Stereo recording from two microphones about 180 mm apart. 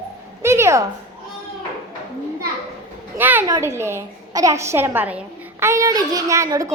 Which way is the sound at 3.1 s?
10° right (ahead or behind).